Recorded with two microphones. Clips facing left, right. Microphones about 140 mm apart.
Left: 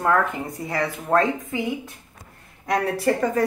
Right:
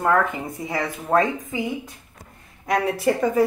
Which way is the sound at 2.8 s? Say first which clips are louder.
Right 1 dB; 20° right (ahead or behind).